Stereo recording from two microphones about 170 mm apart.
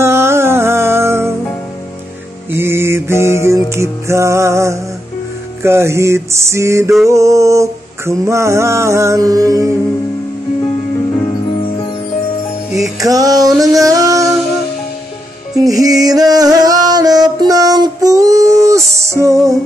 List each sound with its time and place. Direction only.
0.0 s music: 15° right (ahead or behind)
2.5 s music: 15° right (ahead or behind)
5.6 s mantra: 15° right (ahead or behind)
12.7 s music: 20° right (ahead or behind)
15.6 s music: 20° right (ahead or behind)